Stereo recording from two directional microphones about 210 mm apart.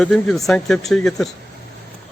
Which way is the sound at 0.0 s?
Centre (ahead or behind).